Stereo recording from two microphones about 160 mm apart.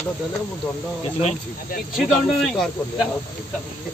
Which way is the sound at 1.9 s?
Centre (ahead or behind).